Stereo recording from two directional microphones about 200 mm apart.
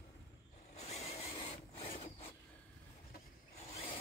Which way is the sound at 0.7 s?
30° left (ahead or behind).